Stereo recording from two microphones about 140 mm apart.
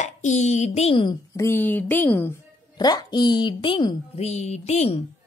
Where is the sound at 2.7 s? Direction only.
30° left (ahead or behind).